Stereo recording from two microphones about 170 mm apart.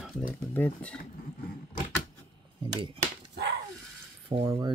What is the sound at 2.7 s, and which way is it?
Speech, 30° right (ahead or behind).